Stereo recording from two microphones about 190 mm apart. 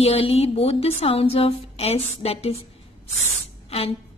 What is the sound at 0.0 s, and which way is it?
A woman's voice, 30° left (ahead or behind).